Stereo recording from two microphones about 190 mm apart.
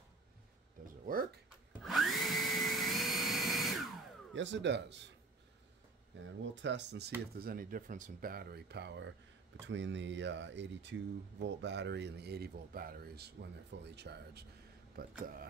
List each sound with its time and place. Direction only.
1.0 s speech: 50° right (ahead or behind)
1.7 s vacuum cleaner: centre (ahead or behind)
4.4 s speech: 70° right (ahead or behind)
6.1 s speech: 75° right (ahead or behind)
7.3 s speech: 50° right (ahead or behind)
15.0 s speech: 50° right (ahead or behind)